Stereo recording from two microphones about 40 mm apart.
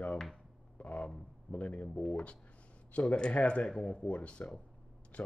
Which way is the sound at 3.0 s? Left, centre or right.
Left.